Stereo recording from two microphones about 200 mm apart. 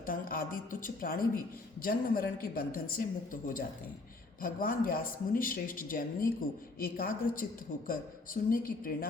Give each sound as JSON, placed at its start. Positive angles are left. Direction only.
{"t": 0.0, "sound": "speech", "side_deg": 45}